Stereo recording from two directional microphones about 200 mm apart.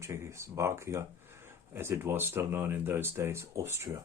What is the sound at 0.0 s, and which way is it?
Speech, 15° right (ahead or behind).